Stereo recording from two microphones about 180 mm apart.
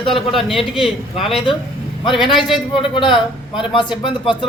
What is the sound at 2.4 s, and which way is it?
A man's voice, 25° left (ahead or behind).